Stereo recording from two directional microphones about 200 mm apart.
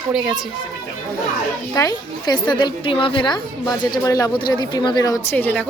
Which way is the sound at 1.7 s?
20° left (ahead or behind).